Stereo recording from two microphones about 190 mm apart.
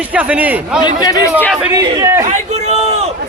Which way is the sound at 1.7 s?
15° right (ahead or behind).